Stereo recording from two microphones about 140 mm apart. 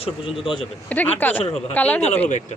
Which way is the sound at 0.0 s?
40° left (ahead or behind).